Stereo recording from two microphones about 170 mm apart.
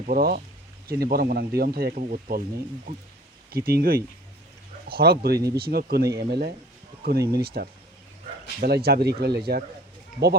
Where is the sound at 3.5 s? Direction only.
65° right (ahead or behind).